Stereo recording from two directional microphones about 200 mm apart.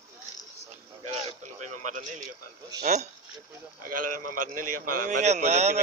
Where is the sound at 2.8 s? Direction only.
35° right (ahead or behind).